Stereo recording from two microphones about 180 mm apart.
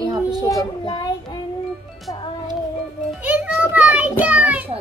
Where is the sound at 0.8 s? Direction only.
25° left (ahead or behind).